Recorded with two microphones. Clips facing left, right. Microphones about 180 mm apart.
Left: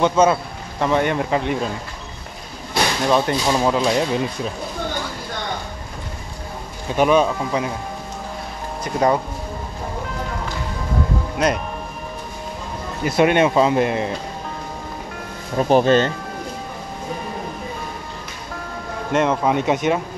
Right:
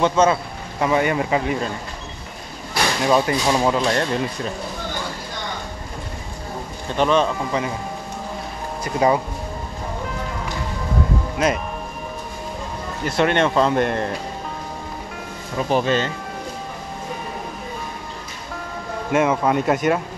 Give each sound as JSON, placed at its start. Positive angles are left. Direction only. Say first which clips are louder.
{"t": 0.0, "sound": "speech", "louder": "left 1 dB", "side_deg": 5}
{"t": 3.0, "sound": "speech", "louder": "right 1 dB", "side_deg": -5}
{"t": 6.9, "sound": "speech", "louder": "left 2 dB", "side_deg": 10}
{"t": 8.8, "sound": "speech", "louder": "even", "side_deg": -5}
{"t": 11.3, "sound": "speech", "louder": "left 1 dB", "side_deg": -5}
{"t": 13.0, "sound": "speech", "louder": "left 3 dB", "side_deg": 10}
{"t": 15.7, "sound": "speech", "louder": "left 5 dB", "side_deg": 40}
{"t": 19.0, "sound": "speech", "louder": "even", "side_deg": -5}